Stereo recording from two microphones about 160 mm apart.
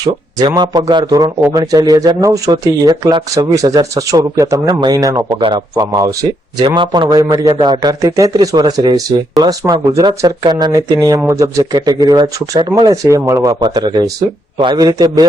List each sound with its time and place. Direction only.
0.0 s speech: 25° right (ahead or behind)